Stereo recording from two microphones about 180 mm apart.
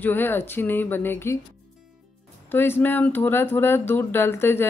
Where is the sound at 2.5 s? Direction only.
10° left (ahead or behind).